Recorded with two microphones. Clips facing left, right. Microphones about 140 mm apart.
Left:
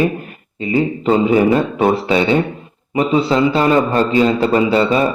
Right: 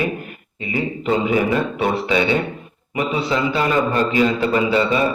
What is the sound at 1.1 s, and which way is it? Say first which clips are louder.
A man's voice: left 5 dB; 35° left (ahead or behind).